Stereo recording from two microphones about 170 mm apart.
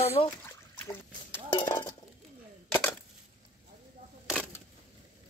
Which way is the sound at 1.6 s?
25° left (ahead or behind).